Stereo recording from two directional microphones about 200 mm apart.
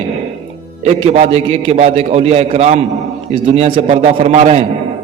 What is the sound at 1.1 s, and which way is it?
A man's voice, 35° right (ahead or behind).